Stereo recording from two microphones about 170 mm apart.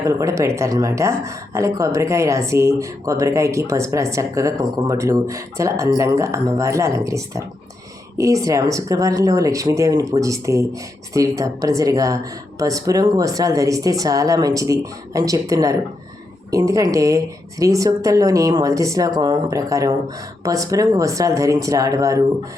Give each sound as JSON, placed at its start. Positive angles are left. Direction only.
{"t": 0.0, "sound": "speech", "side_deg": -20}